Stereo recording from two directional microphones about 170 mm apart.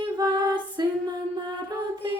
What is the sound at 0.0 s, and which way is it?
Music, 25° right (ahead or behind).